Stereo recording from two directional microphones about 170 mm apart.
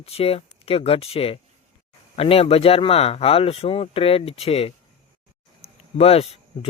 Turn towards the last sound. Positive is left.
turn(degrees=35)  # may be behind; listen again after turning